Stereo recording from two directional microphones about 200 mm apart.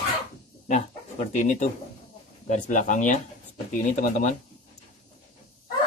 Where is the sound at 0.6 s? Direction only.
35° left (ahead or behind).